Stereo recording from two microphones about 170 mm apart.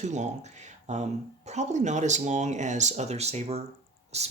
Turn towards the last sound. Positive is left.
turn(degrees=-40)  # may be behind; listen again after turning